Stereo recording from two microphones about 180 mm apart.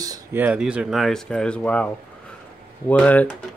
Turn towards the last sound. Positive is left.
turn(degrees=10)  # may be behind; listen again after turning